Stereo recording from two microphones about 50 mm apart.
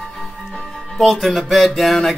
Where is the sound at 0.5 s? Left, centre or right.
Centre.